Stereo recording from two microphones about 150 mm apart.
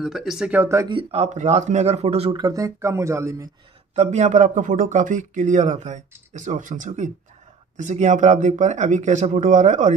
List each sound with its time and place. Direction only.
0.0 s speech: 5° right (ahead or behind)
0.8 s speech: 35° right (ahead or behind)
1.2 s speech: 50° right (ahead or behind)
2.3 s speech: 20° right (ahead or behind)
3.9 s speech: 50° right (ahead or behind)